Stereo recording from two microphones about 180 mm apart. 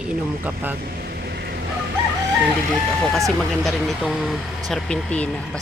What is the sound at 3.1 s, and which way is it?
Speech, centre (ahead or behind).